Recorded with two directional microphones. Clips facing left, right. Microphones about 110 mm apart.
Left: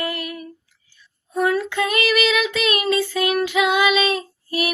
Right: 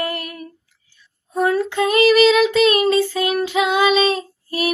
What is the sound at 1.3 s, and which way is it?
Child singing, 35° right (ahead or behind).